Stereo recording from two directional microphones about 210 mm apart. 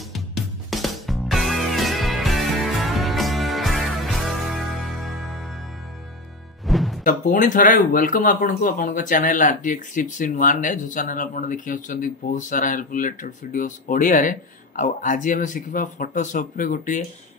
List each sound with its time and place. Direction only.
0.1 s music: centre (ahead or behind)
6.6 s music: centre (ahead or behind)
7.0 s speech: 40° left (ahead or behind)